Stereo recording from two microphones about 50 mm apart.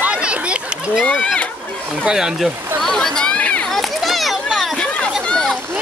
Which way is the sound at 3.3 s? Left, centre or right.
Left.